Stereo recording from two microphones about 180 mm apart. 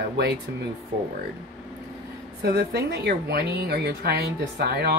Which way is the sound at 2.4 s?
65° right (ahead or behind).